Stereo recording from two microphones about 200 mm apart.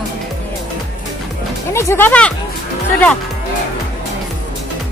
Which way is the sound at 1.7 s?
10° left (ahead or behind).